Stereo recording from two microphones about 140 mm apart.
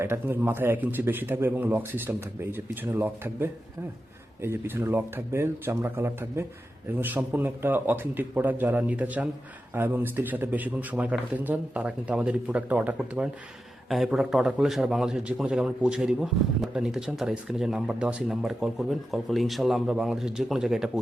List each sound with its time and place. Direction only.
0.0 s a man's voice: 15° right (ahead or behind)